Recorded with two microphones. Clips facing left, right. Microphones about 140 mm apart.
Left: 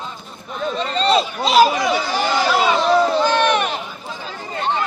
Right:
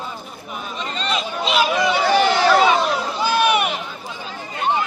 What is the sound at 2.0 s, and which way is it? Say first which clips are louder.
Chatter: right 4 dB; 60° right (ahead or behind).